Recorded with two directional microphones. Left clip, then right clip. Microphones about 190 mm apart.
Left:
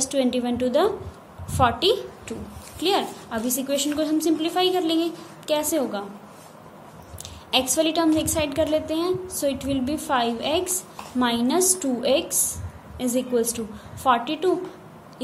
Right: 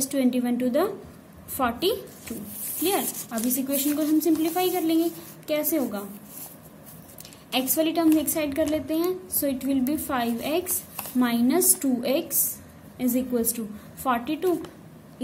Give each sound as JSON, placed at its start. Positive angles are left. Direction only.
{"t": 0.0, "sound": "a woman's voice", "side_deg": -20}
{"t": 7.5, "sound": "a woman's voice", "side_deg": -20}